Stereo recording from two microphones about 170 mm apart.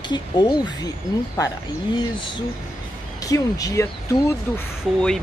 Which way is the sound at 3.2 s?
20° left (ahead or behind).